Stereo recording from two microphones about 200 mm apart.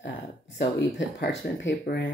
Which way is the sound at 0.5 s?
60° left (ahead or behind).